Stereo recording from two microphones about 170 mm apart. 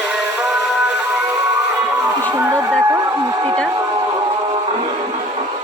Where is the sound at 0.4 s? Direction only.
5° right (ahead or behind).